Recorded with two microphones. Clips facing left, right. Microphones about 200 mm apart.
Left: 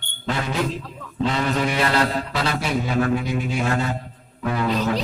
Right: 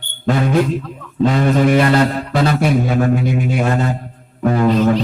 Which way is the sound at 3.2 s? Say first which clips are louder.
Right 6 dB; 55° right (ahead or behind).